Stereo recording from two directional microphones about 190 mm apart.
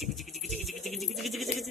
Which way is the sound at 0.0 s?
Centre (ahead or behind).